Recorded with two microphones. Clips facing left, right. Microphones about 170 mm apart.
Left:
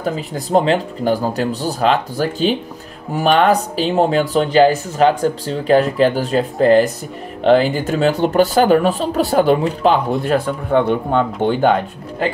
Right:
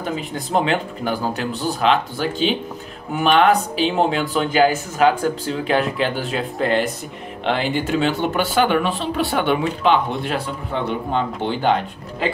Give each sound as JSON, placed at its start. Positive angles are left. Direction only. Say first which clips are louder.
{"t": 0.0, "sound": "speech", "louder": "left 3 dB", "side_deg": 40}